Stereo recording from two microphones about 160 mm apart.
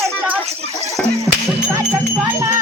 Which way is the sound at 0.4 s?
40° right (ahead or behind).